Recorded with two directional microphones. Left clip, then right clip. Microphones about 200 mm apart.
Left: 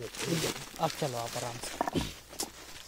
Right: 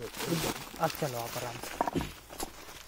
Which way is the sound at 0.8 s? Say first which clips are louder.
Even; 25° left (ahead or behind).